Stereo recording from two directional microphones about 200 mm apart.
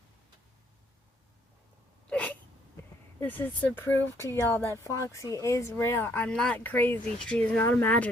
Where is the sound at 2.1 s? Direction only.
5° left (ahead or behind).